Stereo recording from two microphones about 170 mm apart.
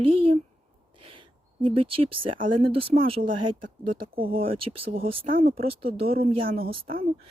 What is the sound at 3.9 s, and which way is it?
Speech, 60° right (ahead or behind).